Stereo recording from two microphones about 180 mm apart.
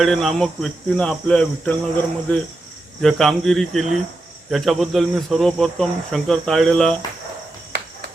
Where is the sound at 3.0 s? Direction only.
Centre (ahead or behind).